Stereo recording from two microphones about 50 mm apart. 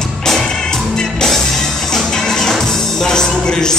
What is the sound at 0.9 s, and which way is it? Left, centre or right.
Music, centre.